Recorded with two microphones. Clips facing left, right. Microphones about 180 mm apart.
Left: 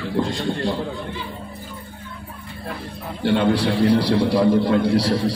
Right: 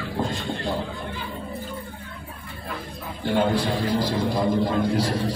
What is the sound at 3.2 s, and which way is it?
A man's voice, 70° left (ahead or behind).